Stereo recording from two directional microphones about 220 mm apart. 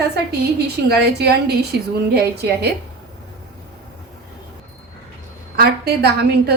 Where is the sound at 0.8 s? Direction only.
45° right (ahead or behind).